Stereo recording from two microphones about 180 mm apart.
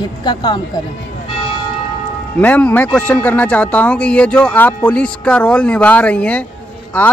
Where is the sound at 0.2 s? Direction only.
25° left (ahead or behind).